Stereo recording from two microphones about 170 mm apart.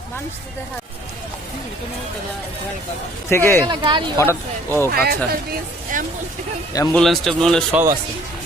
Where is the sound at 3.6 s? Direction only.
30° right (ahead or behind).